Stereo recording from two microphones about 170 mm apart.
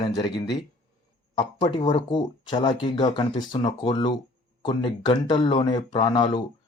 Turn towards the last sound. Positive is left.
turn(degrees=25)  # may be behind; listen again after turning